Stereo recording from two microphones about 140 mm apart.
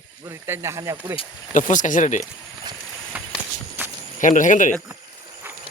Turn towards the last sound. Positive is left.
turn(degrees=65)  # may be behind; listen again after turning